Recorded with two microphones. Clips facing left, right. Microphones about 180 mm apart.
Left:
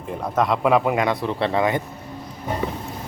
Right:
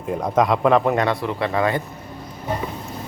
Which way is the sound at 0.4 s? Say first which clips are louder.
Even; centre (ahead or behind).